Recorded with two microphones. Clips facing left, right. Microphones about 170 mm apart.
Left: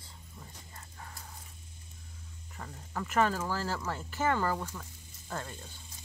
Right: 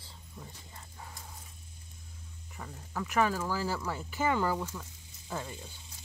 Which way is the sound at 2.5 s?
Centre (ahead or behind).